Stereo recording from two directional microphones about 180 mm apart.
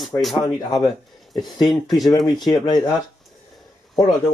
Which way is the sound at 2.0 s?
25° left (ahead or behind).